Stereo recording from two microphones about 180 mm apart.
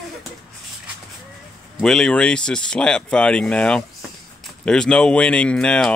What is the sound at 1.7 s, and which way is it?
Speech, 5° left (ahead or behind).